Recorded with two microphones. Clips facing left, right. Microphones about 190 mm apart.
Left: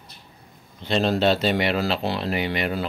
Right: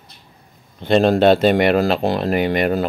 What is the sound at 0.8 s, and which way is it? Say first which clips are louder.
Speech: right 7 dB; 55° right (ahead or behind).